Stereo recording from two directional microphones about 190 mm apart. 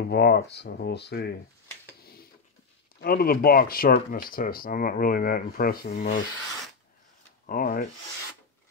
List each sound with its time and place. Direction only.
0.1 s speech: 55° left (ahead or behind)
3.0 s speech: 50° left (ahead or behind)
7.4 s speech: 45° left (ahead or behind)